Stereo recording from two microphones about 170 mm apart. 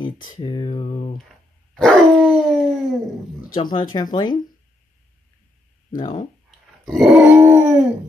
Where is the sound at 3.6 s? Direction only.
30° left (ahead or behind).